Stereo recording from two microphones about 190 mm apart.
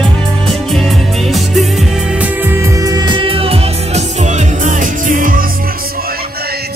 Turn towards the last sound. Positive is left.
turn(degrees=-45)  # may be behind; listen again after turning